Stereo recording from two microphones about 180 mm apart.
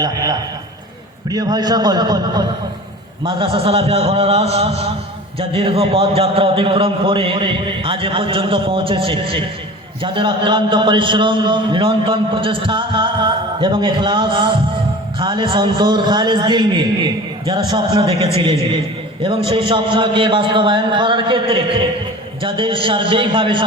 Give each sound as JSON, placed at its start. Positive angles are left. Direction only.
{"t": 0.0, "sound": "a man's voice", "side_deg": -20}